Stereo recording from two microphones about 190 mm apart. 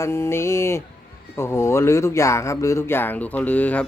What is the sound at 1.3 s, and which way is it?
Speech, 15° left (ahead or behind).